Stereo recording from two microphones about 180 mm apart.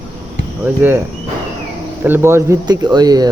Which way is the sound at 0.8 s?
10° right (ahead or behind).